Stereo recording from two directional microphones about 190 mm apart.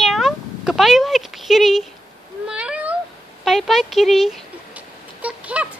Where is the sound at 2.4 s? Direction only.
5° right (ahead or behind).